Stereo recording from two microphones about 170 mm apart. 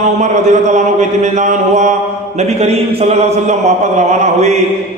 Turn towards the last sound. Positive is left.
turn(degrees=-45)  # may be behind; listen again after turning